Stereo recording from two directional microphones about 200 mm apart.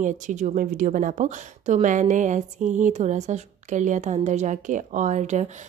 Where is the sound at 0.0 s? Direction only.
40° right (ahead or behind).